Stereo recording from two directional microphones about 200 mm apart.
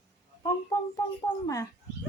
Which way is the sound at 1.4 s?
15° left (ahead or behind).